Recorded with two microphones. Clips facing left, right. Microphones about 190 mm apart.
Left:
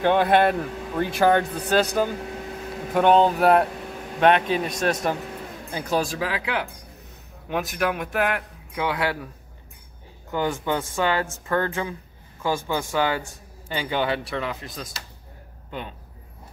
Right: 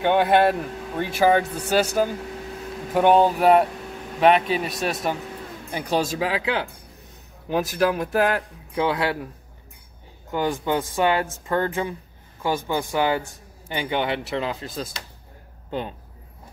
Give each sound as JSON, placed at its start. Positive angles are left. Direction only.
{"t": 0.0, "sound": "a man's voice", "side_deg": 0}
{"t": 5.7, "sound": "a man's voice", "side_deg": -20}
{"t": 10.3, "sound": "speech", "side_deg": -15}